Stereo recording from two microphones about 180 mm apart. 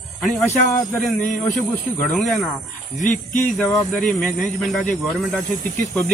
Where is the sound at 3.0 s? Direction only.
45° left (ahead or behind).